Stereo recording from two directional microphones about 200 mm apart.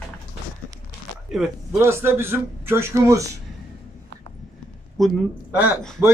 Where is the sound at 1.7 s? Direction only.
10° right (ahead or behind).